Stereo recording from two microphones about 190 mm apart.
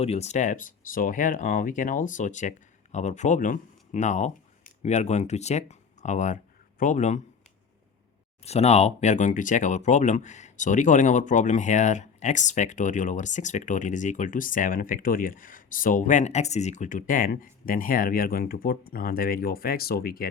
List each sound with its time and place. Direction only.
0.0 s speech: 35° left (ahead or behind)
8.4 s speech: 35° left (ahead or behind); by 20.2 s 55° left (ahead or behind)